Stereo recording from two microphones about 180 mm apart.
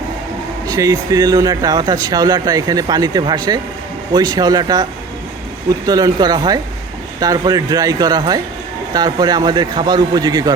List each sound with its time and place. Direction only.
0.7 s speech: 20° right (ahead or behind)